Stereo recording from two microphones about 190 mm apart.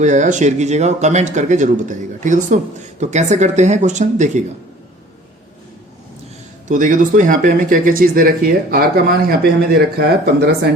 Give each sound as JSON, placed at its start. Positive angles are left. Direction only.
{"t": 0.0, "sound": "speech", "side_deg": -40}
{"t": 6.7, "sound": "speech", "side_deg": -45}